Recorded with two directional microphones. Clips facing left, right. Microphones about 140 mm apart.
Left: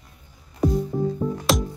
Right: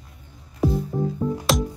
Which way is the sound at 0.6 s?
5° right (ahead or behind).